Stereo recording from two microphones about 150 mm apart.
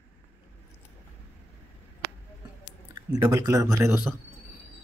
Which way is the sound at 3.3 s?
25° right (ahead or behind).